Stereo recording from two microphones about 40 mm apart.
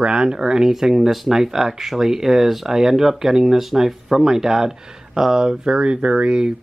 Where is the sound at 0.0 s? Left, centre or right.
Right.